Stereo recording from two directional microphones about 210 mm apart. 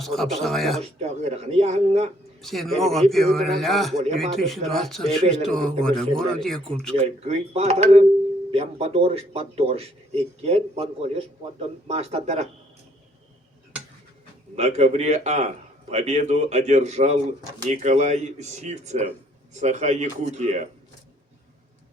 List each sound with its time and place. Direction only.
0.0 s speech: centre (ahead or behind)
0.8 s speech: 35° right (ahead or behind)
2.4 s speech: centre (ahead or behind)
6.9 s speech: 30° right (ahead or behind)
14.5 s speech: 30° right (ahead or behind)